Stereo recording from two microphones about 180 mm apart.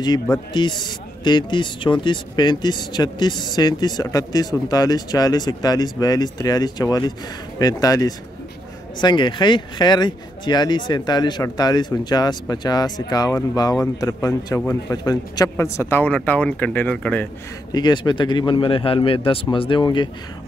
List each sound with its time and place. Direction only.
0.5 s a man's voice: 25° left (ahead or behind); by 17.3 s 10° left (ahead or behind)
17.7 s speech: 25° left (ahead or behind)